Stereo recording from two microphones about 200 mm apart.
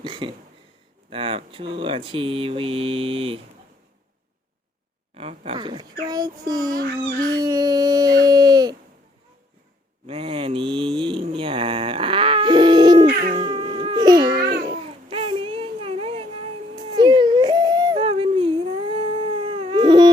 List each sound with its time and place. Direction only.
0.0 s a sound: 25° right (ahead or behind)
1.1 s speech: 30° right (ahead or behind)
5.1 s speech: 30° right (ahead or behind)
10.1 s mantra: 30° right (ahead or behind)
13.3 s baby cry: 25° right (ahead or behind)
14.3 s babbling: 50° right (ahead or behind)
15.1 s a sound: 30° right (ahead or behind)